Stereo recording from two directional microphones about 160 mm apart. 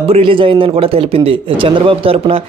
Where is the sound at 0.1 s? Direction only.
35° right (ahead or behind).